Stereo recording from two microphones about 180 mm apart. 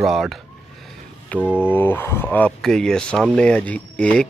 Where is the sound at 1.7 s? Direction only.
10° left (ahead or behind).